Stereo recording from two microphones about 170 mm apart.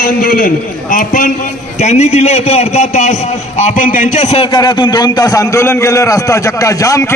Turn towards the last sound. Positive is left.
turn(degrees=20)  # may be behind; listen again after turning